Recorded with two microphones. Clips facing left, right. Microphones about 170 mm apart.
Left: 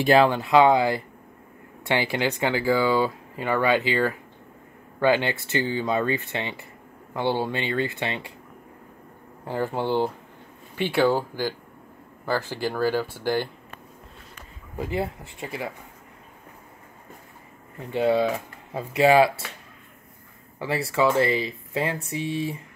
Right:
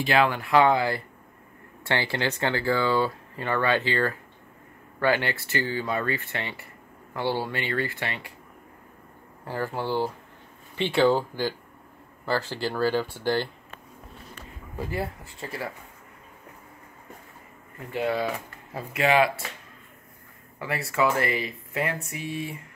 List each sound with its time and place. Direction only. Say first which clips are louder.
0.0 s speech: left 5 dB; 35° left (ahead or behind)
0.3 s speech: left 3 dB; 20° left (ahead or behind)
9.4 s speech: left 3 dB; 20° left (ahead or behind)
10.8 s speech: even; 10° left (ahead or behind)
17.9 s speech: left 5 dB; 25° left (ahead or behind)
20.5 s speech: left 3 dB; 30° left (ahead or behind)